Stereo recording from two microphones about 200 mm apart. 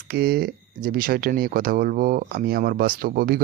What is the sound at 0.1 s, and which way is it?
Speech, 50° right (ahead or behind).